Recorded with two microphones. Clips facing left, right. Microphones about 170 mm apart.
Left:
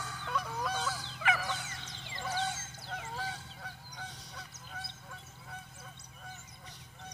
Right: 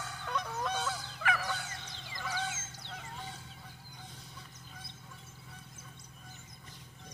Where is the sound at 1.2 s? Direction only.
20° left (ahead or behind).